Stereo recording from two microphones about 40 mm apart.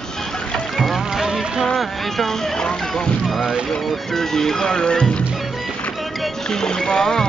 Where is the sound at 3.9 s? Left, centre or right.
Centre.